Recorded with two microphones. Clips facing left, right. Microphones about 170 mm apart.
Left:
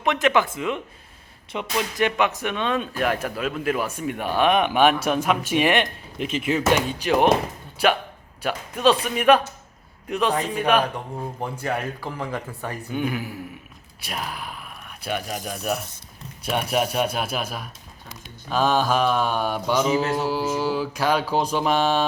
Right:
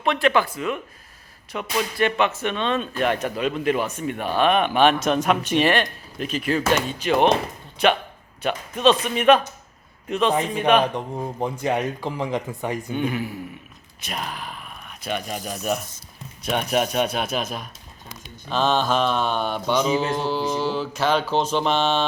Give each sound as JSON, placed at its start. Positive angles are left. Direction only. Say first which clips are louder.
{"t": 0.0, "sound": "speech", "louder": "even", "side_deg": 15}
{"t": 8.4, "sound": "speech", "louder": "right 1 dB", "side_deg": 10}
{"t": 11.1, "sound": "speech", "louder": "right 3 dB", "side_deg": -15}
{"t": 12.9, "sound": "speech", "louder": "left 2 dB", "side_deg": 5}